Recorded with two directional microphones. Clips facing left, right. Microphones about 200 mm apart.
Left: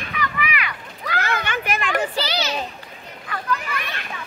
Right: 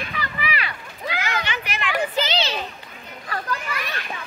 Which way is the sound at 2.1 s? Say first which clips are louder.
Right 1 dB; 25° right (ahead or behind).